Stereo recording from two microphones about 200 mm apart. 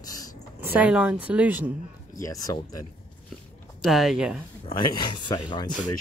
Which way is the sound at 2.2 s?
15° left (ahead or behind).